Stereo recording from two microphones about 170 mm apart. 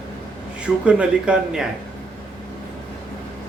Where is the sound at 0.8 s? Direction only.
5° right (ahead or behind).